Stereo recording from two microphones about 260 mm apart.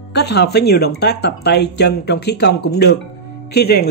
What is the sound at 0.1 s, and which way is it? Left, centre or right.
Speech, left.